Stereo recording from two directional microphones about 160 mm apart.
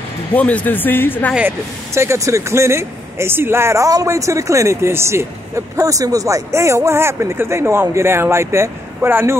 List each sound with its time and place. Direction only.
0.3 s speech: 10° left (ahead or behind)
2.0 s speech: 20° right (ahead or behind)